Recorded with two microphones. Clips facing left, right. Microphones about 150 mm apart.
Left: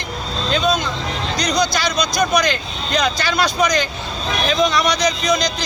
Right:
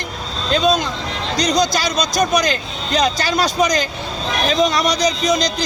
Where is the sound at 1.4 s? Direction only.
40° right (ahead or behind).